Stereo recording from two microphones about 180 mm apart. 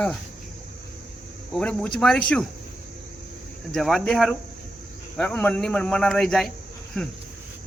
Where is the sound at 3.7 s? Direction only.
Centre (ahead or behind).